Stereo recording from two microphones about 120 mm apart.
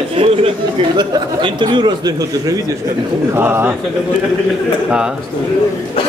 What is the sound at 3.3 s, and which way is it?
Speech, 20° right (ahead or behind).